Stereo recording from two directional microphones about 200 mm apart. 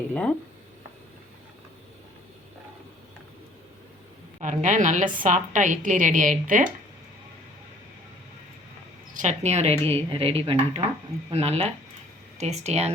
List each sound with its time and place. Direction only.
0.1 s speech: 5° left (ahead or behind)
4.4 s a woman's voice: 40° right (ahead or behind)
9.1 s a woman's voice: 35° right (ahead or behind)